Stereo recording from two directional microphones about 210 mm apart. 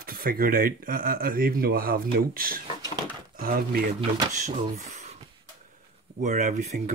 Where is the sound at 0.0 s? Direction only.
45° right (ahead or behind).